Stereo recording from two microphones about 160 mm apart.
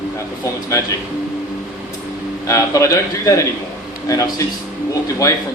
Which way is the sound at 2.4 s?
20° left (ahead or behind).